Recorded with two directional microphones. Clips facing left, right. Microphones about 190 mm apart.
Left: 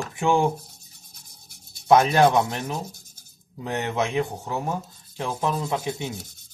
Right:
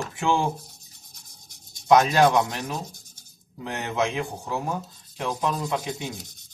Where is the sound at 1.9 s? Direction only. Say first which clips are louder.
Left 1 dB; 25° left (ahead or behind).